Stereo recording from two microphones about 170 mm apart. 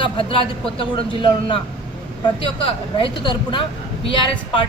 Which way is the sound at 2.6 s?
30° left (ahead or behind).